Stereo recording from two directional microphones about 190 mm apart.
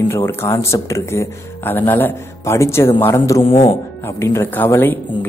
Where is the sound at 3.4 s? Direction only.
30° left (ahead or behind).